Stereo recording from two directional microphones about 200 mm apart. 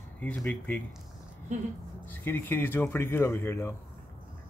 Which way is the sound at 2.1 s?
10° left (ahead or behind).